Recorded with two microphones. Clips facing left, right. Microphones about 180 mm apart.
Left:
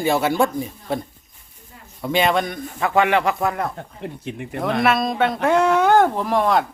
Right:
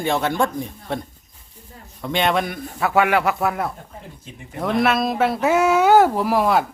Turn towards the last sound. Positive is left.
turn(degrees=-5)  # may be behind; listen again after turning